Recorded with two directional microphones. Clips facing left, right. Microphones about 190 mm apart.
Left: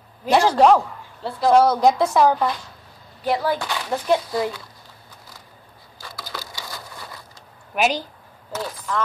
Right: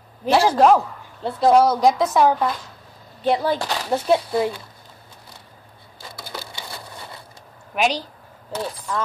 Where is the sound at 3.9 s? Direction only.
25° right (ahead or behind).